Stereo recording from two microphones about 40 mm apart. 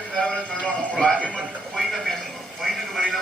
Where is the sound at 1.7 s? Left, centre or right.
Centre.